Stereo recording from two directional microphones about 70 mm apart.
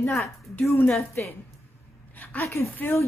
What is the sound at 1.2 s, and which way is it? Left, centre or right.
Speech, left.